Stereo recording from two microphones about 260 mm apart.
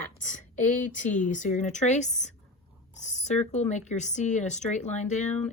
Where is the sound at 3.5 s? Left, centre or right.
Left.